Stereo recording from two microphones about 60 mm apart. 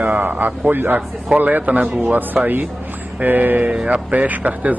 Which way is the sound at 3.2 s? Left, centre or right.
Right.